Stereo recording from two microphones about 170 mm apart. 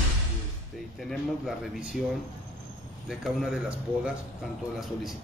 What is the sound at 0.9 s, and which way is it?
A man's voice, centre (ahead or behind).